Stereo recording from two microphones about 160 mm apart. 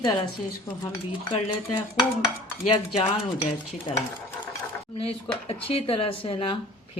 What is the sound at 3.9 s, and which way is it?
Speech, 30° left (ahead or behind).